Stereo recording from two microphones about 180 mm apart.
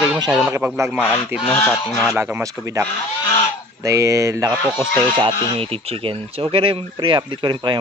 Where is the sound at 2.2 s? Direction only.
10° right (ahead or behind).